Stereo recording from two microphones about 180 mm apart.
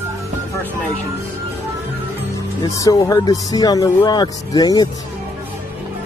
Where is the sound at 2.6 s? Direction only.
20° left (ahead or behind).